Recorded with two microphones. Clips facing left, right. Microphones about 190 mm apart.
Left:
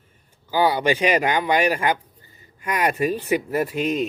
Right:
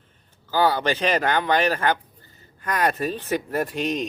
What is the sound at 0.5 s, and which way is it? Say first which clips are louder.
Speech: left 2 dB; 10° left (ahead or behind).